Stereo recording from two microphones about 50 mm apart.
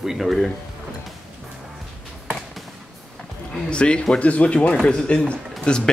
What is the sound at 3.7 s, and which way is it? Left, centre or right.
Speech, left.